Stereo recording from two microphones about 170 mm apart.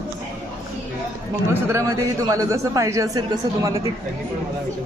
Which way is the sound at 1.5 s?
20° right (ahead or behind).